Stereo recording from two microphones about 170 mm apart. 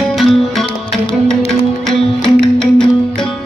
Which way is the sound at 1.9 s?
Centre (ahead or behind).